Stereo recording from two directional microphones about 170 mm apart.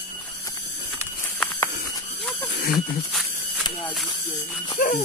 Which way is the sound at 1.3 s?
15° left (ahead or behind).